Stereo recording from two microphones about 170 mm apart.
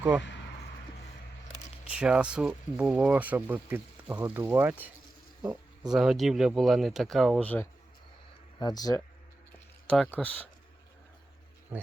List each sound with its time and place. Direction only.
1.9 s speech: 5° right (ahead or behind); by 7.7 s 10° left (ahead or behind)
8.5 s speech: 25° left (ahead or behind)
10.1 s speech: 10° left (ahead or behind)